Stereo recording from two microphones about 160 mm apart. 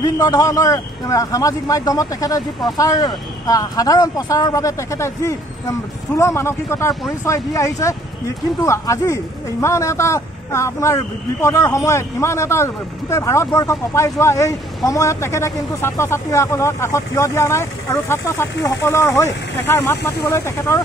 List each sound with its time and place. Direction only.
0.0 s a man's voice: 20° left (ahead or behind)